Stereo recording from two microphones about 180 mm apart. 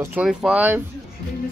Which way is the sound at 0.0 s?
5° right (ahead or behind).